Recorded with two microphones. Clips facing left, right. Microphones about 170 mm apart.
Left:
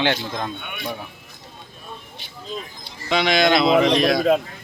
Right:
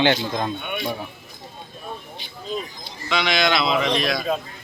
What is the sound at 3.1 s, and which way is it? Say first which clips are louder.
Speech: left 4 dB; 50° left (ahead or behind).